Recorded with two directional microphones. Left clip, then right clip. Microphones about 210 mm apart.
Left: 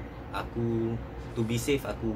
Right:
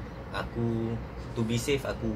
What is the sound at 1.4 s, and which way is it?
Speech, 10° left (ahead or behind).